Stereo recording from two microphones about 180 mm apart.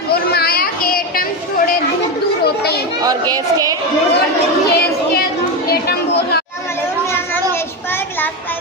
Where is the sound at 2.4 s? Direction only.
60° left (ahead or behind).